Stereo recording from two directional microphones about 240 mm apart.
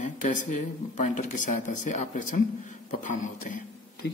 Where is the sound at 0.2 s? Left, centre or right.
Left.